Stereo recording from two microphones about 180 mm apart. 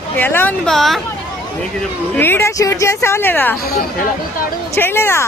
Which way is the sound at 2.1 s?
10° left (ahead or behind).